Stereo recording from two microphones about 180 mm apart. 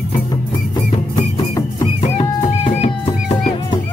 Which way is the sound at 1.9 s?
35° left (ahead or behind).